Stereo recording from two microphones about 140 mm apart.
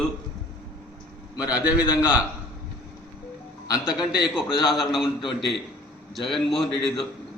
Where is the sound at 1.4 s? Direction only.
10° right (ahead or behind).